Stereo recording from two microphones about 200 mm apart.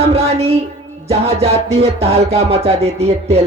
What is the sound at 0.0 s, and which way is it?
Music, 30° right (ahead or behind).